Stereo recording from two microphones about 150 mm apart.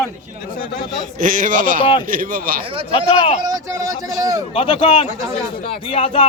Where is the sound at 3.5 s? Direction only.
20° right (ahead or behind).